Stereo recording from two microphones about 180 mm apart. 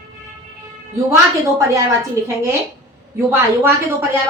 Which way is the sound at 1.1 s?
20° right (ahead or behind).